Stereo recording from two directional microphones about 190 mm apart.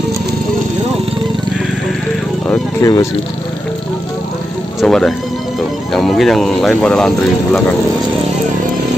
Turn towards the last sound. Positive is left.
turn(degrees=5)  # may be behind; listen again after turning